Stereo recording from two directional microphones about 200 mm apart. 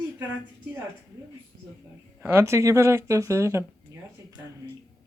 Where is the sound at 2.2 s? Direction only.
10° right (ahead or behind).